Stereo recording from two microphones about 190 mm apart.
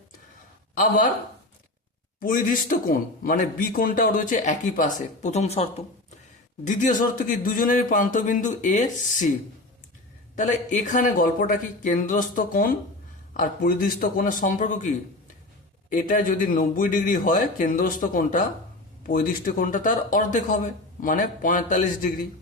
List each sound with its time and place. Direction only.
0.8 s a man's voice: 45° left (ahead or behind)
2.2 s a man's voice: 45° left (ahead or behind)
10.3 s a man's voice: 40° left (ahead or behind)